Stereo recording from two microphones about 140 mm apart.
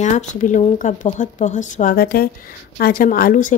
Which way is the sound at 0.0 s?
60° left (ahead or behind).